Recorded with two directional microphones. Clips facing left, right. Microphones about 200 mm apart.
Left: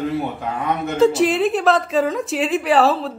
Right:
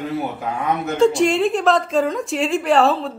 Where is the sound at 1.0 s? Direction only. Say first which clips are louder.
Even; centre (ahead or behind).